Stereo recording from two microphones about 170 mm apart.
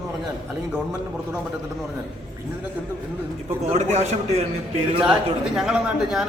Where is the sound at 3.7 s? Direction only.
40° right (ahead or behind).